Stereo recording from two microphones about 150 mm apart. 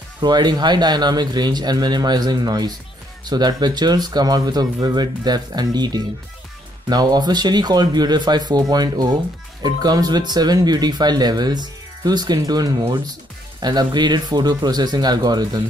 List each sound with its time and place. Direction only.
0.2 s speech: 30° right (ahead or behind)